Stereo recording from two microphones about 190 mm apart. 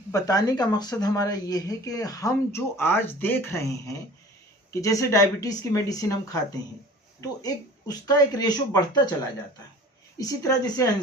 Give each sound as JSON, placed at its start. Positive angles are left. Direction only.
{"t": 0.1, "sound": "speech", "side_deg": 20}
{"t": 10.2, "sound": "speech", "side_deg": 20}